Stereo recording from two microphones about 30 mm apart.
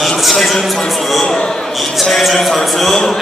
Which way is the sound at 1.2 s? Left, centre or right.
Left.